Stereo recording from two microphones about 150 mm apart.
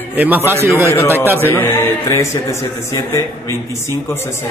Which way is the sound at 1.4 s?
15° left (ahead or behind).